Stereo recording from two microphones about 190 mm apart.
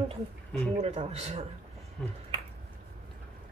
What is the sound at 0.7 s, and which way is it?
Speech, 35° right (ahead or behind).